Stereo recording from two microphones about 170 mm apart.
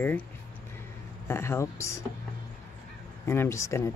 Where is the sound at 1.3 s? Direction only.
15° left (ahead or behind).